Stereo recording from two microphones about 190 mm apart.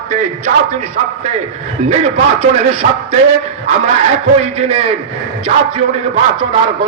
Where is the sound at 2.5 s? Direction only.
30° right (ahead or behind).